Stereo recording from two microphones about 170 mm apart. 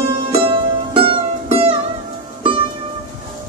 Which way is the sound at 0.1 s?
30° right (ahead or behind).